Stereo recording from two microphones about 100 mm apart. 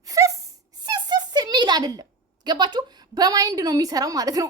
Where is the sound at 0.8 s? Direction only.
45° right (ahead or behind).